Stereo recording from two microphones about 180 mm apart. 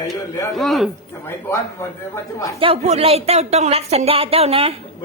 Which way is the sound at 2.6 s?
35° right (ahead or behind).